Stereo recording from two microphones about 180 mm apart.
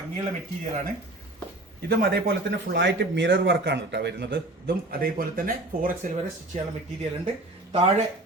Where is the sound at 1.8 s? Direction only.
65° right (ahead or behind).